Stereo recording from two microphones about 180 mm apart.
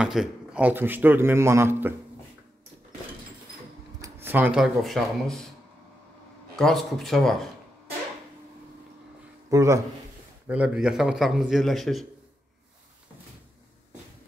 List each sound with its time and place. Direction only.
0.0 s a man's voice: 5° right (ahead or behind)
4.0 s speech: 10° right (ahead or behind)
6.6 s a man's voice: centre (ahead or behind)
9.5 s a man's voice: 15° right (ahead or behind); by 12.1 s centre (ahead or behind)